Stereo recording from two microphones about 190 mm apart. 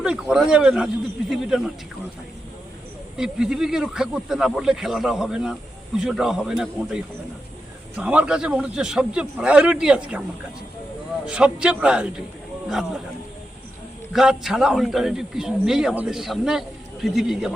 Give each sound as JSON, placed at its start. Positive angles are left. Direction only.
{"t": 0.0, "sound": "a man's voice", "side_deg": -5}
{"t": 3.2, "sound": "a man's voice", "side_deg": -5}
{"t": 11.3, "sound": "a man's voice", "side_deg": -5}
{"t": 14.1, "sound": "a man's voice", "side_deg": 0}